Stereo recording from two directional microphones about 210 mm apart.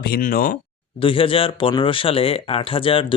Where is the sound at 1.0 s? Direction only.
25° left (ahead or behind).